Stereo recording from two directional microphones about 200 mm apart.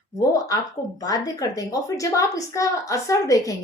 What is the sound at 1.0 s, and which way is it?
A woman's voice, 20° left (ahead or behind).